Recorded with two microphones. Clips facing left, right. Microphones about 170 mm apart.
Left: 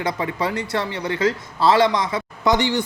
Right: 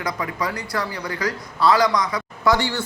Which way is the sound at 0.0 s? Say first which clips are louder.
Left 3 dB; 25° left (ahead or behind).